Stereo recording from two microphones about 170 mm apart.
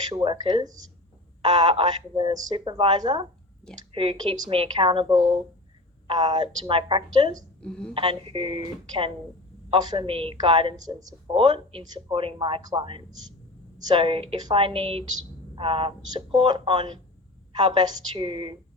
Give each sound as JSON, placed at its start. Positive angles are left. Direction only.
{"t": 0.1, "sound": "speech", "side_deg": -30}
{"t": 7.6, "sound": "a woman's voice", "side_deg": 5}
{"t": 7.9, "sound": "speech", "side_deg": -30}